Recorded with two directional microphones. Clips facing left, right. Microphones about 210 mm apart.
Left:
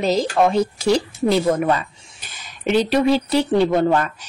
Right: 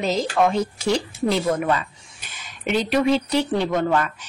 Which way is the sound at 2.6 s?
35° left (ahead or behind).